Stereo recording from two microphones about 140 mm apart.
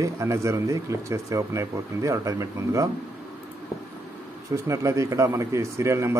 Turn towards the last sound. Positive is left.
turn(degrees=-20)  # may be behind; listen again after turning